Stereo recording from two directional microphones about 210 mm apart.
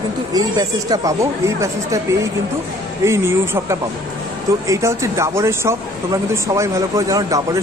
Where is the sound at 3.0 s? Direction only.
15° right (ahead or behind).